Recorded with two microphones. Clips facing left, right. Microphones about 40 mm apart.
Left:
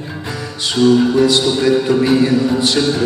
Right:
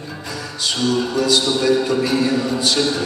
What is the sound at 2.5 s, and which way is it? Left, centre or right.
Speech, left.